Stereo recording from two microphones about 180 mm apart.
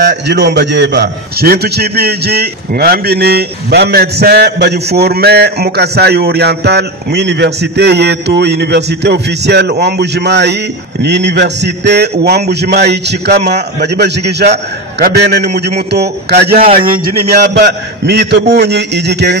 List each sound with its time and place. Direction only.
0.0 s a man's voice: 70° right (ahead or behind)
15.9 s a man's voice: 65° right (ahead or behind)